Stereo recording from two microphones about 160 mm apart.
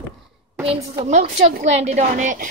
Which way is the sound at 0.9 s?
45° right (ahead or behind).